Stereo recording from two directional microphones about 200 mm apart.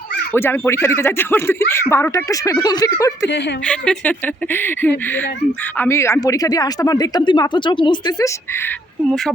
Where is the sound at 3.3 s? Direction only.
60° left (ahead or behind).